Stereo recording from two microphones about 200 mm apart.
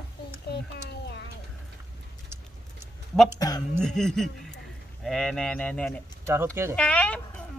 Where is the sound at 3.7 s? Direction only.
5° left (ahead or behind).